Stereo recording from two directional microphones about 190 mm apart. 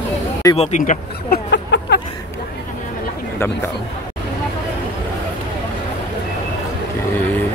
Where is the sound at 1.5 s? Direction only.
70° left (ahead or behind).